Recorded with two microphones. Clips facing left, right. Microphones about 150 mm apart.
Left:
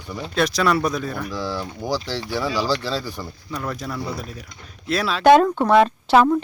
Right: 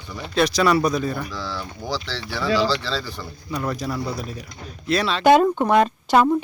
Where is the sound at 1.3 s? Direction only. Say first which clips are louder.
Left 4 dB; 15° left (ahead or behind).